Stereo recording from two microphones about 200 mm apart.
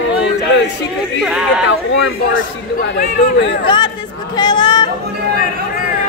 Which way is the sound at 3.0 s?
45° left (ahead or behind).